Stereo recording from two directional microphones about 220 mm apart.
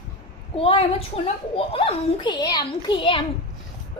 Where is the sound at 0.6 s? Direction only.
25° left (ahead or behind).